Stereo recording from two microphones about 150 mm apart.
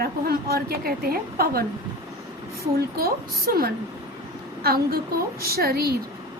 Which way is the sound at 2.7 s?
90° right.